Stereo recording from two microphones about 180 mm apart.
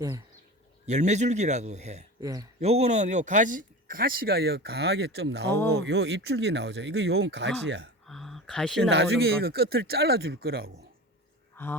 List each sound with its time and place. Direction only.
0.9 s a man's voice: 40° right (ahead or behind)
2.2 s speech: 20° right (ahead or behind)
2.6 s speech: 35° right (ahead or behind); by 7.9 s 75° right (ahead or behind)
8.0 s a sound: centre (ahead or behind)
8.9 s speech: 70° right (ahead or behind)
11.5 s speech: 10° left (ahead or behind)